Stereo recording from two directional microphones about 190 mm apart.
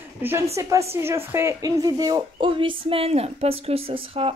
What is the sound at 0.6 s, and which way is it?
A woman's voice, 15° right (ahead or behind).